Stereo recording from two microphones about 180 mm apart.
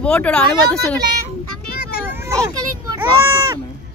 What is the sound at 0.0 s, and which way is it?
Speech, 5° left (ahead or behind).